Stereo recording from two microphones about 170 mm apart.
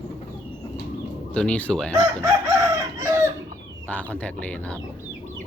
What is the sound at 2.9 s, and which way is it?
Chicken, 15° right (ahead or behind).